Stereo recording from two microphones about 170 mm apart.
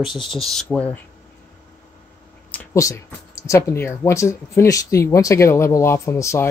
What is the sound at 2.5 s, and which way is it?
Speech, 15° left (ahead or behind).